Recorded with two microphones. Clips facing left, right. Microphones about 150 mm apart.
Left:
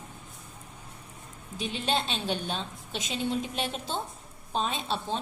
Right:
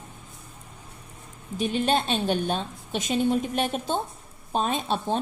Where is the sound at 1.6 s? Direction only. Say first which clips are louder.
Right 6 dB; 50° right (ahead or behind).